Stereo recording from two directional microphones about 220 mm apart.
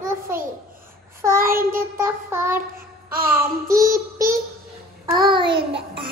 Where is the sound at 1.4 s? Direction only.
40° right (ahead or behind).